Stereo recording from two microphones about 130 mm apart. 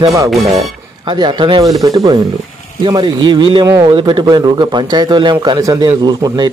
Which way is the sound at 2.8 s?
30° right (ahead or behind).